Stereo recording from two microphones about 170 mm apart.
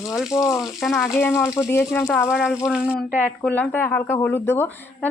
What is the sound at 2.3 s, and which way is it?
Speech, centre (ahead or behind).